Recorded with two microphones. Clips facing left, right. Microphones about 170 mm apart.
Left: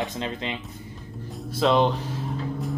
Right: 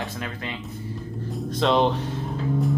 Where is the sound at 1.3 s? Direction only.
Centre (ahead or behind).